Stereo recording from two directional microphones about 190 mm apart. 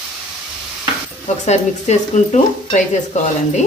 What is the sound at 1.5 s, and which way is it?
Speech, 40° left (ahead or behind).